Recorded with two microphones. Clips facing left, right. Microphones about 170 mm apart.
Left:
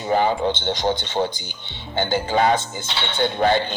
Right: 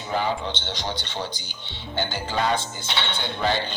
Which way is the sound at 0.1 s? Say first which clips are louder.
Left 7 dB; 50° left (ahead or behind).